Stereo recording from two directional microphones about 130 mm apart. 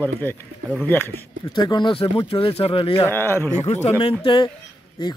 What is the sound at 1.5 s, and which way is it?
Speech, 35° left (ahead or behind).